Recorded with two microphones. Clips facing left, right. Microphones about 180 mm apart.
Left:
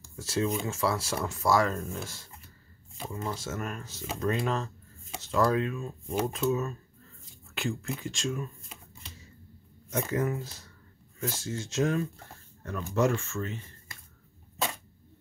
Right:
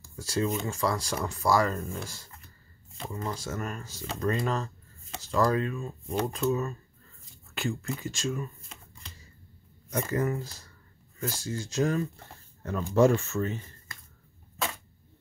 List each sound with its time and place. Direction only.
0.1 s speech: centre (ahead or behind)
12.6 s speech: 30° right (ahead or behind)